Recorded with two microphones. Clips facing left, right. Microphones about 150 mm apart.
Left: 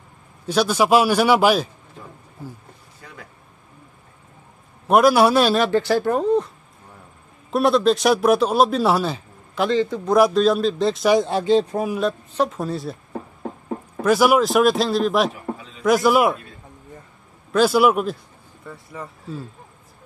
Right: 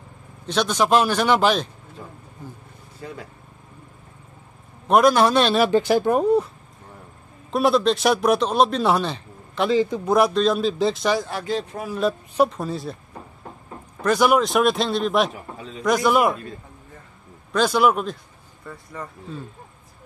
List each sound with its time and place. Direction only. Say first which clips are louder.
0.5 s a man's voice: left 2 dB; 10° left (ahead or behind)
4.8 s a man's voice: left 1 dB; 5° left (ahead or behind)
5.6 s speech: right 1 dB; 15° right (ahead or behind)
7.5 s a man's voice: left 2 dB; centre (ahead or behind)
9.8 s speech: even; 15° right (ahead or behind)
10.1 s a man's voice: left 3 dB; centre (ahead or behind)
11.1 s speech: left 8 dB; 25° left (ahead or behind)
12.0 s a woman's voice: right 7 dB; 5° right (ahead or behind)
14.0 s a man's voice: left 2 dB; 5° left (ahead or behind)
17.5 s a man's voice: left 3 dB; 5° left (ahead or behind)